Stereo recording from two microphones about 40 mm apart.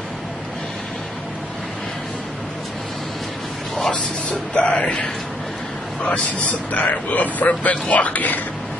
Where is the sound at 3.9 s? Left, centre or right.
Left.